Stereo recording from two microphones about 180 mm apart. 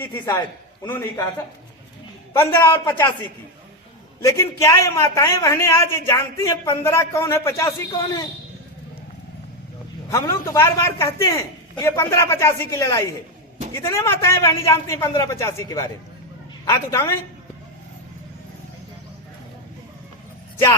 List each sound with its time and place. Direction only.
0.0 s a man's voice: 15° left (ahead or behind)
2.4 s a man's voice: 15° left (ahead or behind)
4.2 s a man's voice: 15° left (ahead or behind)
10.1 s a man's voice: 20° left (ahead or behind)